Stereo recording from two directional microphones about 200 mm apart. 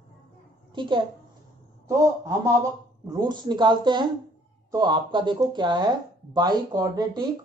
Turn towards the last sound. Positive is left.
turn(degrees=-20)  # may be behind; listen again after turning